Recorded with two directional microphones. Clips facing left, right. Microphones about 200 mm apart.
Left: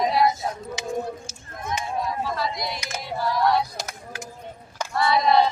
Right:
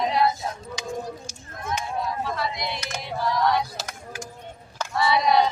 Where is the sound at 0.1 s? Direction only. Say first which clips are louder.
Left 1 dB; 10° left (ahead or behind).